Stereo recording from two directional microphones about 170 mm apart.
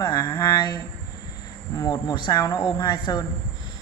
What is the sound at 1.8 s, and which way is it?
Speech, 25° left (ahead or behind).